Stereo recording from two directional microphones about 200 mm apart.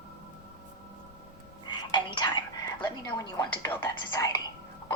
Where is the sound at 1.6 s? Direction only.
20° left (ahead or behind).